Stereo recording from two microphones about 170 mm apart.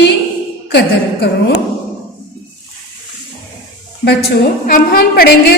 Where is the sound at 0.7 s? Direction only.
80° left.